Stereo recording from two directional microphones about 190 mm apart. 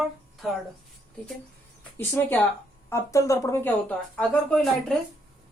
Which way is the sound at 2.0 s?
10° left (ahead or behind).